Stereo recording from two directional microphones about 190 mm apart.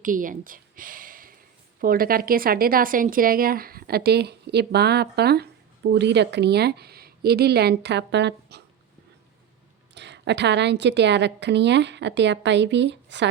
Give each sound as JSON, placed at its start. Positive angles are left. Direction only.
{"t": 0.0, "sound": "a woman's voice", "side_deg": -45}
{"t": 9.9, "sound": "a woman's voice", "side_deg": -65}